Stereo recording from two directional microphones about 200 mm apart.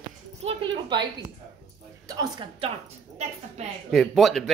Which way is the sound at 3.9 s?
Centre (ahead or behind).